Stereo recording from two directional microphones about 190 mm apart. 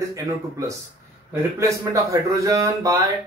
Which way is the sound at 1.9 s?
15° right (ahead or behind).